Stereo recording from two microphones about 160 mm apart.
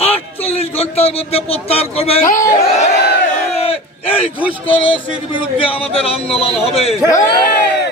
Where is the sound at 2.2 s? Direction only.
55° left (ahead or behind).